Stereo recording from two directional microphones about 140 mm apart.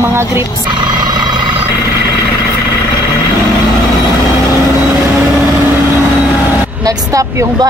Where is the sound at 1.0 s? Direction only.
30° right (ahead or behind).